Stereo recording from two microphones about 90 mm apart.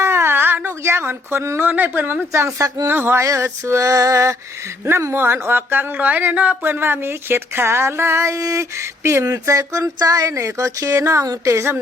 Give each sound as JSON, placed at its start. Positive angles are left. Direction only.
{"t": 0.0, "sound": "speech", "side_deg": -30}
{"t": 2.8, "sound": "speech", "side_deg": -25}